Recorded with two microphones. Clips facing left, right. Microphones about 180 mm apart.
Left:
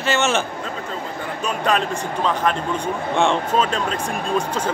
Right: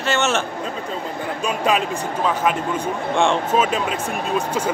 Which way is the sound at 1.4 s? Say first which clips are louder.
Even; 5° right (ahead or behind).